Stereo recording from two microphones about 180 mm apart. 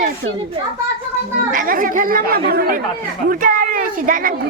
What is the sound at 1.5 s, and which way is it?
A woman's voice, 50° right (ahead or behind).